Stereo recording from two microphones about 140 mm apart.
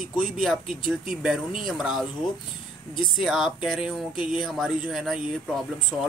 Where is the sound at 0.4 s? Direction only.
Centre (ahead or behind).